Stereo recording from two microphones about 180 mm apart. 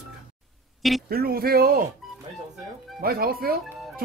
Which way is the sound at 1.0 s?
55° right (ahead or behind).